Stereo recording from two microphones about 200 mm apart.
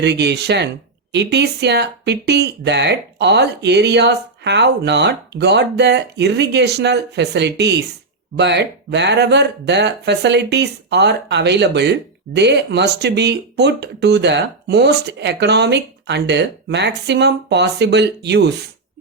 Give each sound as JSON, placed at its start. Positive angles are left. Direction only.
{"t": 0.0, "sound": "speech", "side_deg": -55}